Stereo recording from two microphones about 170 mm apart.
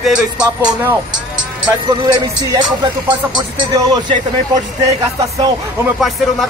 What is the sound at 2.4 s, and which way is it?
Speech, 25° right (ahead or behind).